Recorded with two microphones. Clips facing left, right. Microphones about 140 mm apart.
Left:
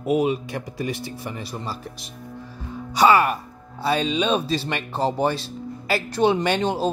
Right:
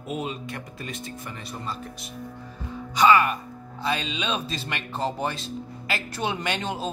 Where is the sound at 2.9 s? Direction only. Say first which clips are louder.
Left 2 dB; 35° left (ahead or behind).